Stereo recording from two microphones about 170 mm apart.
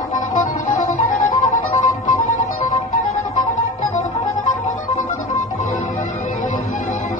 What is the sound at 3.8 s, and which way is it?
Music, 45° left (ahead or behind).